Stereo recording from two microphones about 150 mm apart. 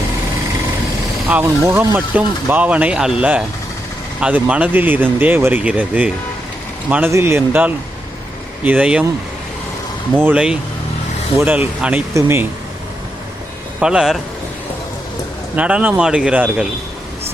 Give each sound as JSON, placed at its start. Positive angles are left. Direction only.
{"t": 1.3, "sound": "speech", "side_deg": -15}
{"t": 10.2, "sound": "speech", "side_deg": -10}
{"t": 13.7, "sound": "speech", "side_deg": -5}
{"t": 15.5, "sound": "speech", "side_deg": -10}